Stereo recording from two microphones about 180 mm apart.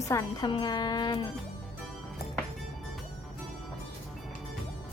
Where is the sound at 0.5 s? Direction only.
25° left (ahead or behind).